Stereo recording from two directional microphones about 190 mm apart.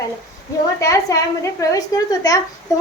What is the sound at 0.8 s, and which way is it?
A woman's voice, 15° left (ahead or behind).